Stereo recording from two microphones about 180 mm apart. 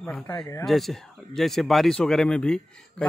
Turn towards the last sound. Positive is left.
turn(degrees=5)  # may be behind; listen again after turning